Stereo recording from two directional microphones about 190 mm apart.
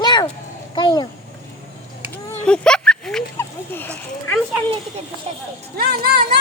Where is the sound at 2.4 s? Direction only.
5° left (ahead or behind).